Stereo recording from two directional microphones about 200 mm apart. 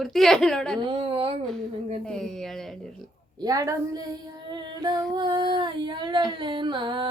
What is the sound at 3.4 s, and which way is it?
A woman's voice, 15° right (ahead or behind).